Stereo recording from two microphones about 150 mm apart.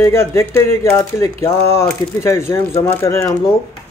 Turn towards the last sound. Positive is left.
turn(degrees=20)  # may be behind; listen again after turning